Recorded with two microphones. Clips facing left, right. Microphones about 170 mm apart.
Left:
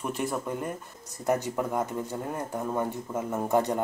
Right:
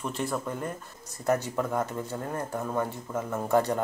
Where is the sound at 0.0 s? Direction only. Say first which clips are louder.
Left 1 dB; 15° left (ahead or behind).